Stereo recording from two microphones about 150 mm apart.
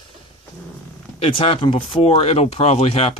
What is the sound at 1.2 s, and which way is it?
Speech, 35° left (ahead or behind).